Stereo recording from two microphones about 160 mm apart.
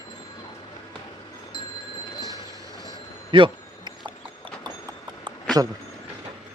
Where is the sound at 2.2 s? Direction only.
20° right (ahead or behind).